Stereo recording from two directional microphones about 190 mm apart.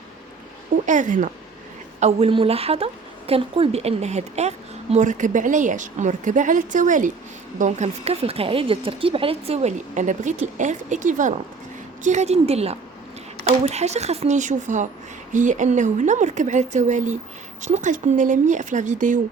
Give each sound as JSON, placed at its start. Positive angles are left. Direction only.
{"t": 0.9, "sound": "a woman's voice", "side_deg": -40}